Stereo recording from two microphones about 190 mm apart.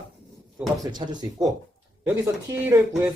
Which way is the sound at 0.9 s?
20° right (ahead or behind).